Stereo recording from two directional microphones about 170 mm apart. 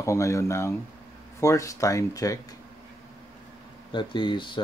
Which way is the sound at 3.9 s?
30° left (ahead or behind).